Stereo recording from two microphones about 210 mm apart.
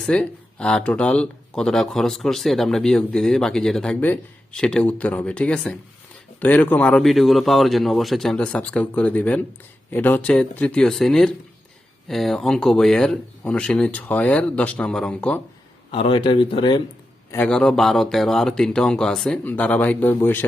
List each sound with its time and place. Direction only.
0.0 s speech: 5° left (ahead or behind)
15.9 s speech: 25° left (ahead or behind)
17.3 s speech: 5° left (ahead or behind)